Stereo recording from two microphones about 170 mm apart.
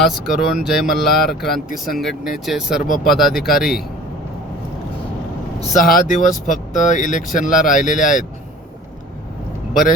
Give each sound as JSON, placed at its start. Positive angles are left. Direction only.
{"t": 0.0, "sound": "speech", "side_deg": 0}
{"t": 2.8, "sound": "speech", "side_deg": 50}
{"t": 3.1, "sound": "speech", "side_deg": 0}
{"t": 5.8, "sound": "speech", "side_deg": 55}